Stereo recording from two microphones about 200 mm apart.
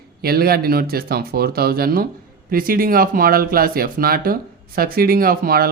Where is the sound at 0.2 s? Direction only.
50° right (ahead or behind).